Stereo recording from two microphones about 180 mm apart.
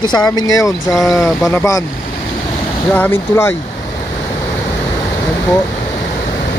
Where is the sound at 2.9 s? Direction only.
10° left (ahead or behind).